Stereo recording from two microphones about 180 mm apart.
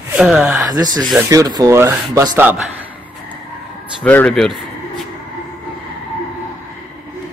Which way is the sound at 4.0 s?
5° left (ahead or behind).